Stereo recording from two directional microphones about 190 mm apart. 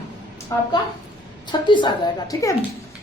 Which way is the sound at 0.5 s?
15° left (ahead or behind).